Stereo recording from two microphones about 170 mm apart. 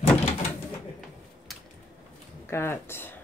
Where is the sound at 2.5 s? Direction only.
15° left (ahead or behind).